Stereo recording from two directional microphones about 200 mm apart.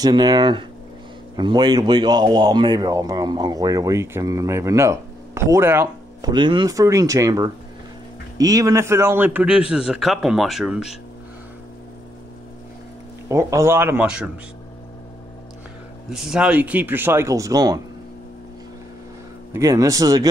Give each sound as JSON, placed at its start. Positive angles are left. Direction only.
{"t": 0.0, "sound": "a man's voice", "side_deg": -20}
{"t": 13.3, "sound": "speech", "side_deg": -15}
{"t": 16.1, "sound": "speech", "side_deg": 0}
{"t": 19.5, "sound": "speech", "side_deg": -15}